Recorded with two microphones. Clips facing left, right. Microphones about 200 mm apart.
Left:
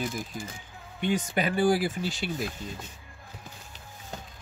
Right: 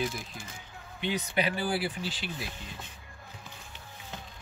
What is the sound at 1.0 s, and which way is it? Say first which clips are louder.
Speech: left 3 dB; 45° left (ahead or behind).